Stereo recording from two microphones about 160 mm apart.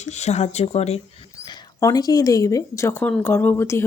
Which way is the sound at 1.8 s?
20° left (ahead or behind).